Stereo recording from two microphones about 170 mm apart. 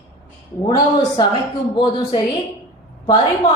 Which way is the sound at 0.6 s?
25° left (ahead or behind).